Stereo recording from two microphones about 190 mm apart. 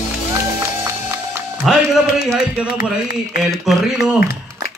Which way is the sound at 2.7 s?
50° left (ahead or behind).